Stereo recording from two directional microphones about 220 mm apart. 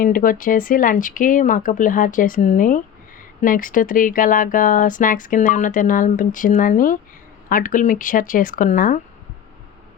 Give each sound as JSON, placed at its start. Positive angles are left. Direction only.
{"t": 0.0, "sound": "speech", "side_deg": 40}